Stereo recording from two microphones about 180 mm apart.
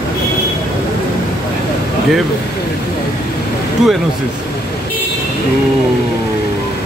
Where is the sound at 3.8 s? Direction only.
Centre (ahead or behind).